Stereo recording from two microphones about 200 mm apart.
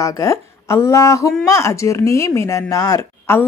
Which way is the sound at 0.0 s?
15° left (ahead or behind).